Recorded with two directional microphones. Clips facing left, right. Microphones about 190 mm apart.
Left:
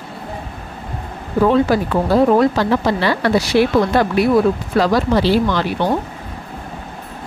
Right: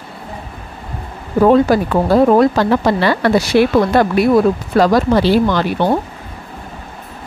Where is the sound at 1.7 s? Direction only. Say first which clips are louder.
Right 3 dB; 45° right (ahead or behind).